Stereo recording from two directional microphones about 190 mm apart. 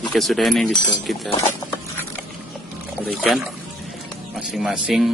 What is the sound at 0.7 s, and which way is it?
Speech, 20° left (ahead or behind).